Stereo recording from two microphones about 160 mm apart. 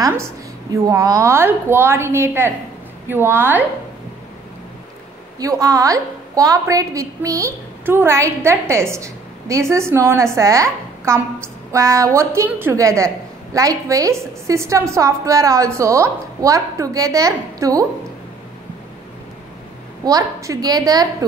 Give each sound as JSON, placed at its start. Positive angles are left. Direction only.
{"t": 0.0, "sound": "a woman's voice", "side_deg": -15}
{"t": 5.4, "sound": "a woman's voice", "side_deg": -20}
{"t": 20.1, "sound": "a woman's voice", "side_deg": -20}